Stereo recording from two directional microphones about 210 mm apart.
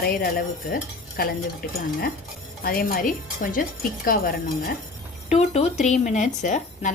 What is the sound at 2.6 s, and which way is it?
A woman's voice, 45° left (ahead or behind).